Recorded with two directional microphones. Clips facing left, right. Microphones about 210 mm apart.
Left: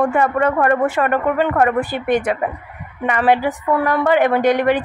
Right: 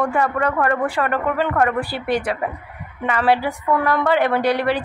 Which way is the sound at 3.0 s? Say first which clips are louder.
Left 2 dB; 15° left (ahead or behind).